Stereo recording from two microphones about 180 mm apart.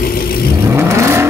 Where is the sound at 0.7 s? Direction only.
15° right (ahead or behind).